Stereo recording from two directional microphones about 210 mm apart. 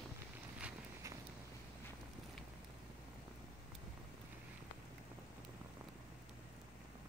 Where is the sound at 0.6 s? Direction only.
5° right (ahead or behind).